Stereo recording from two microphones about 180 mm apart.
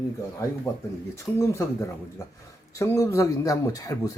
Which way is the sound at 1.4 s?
15° left (ahead or behind).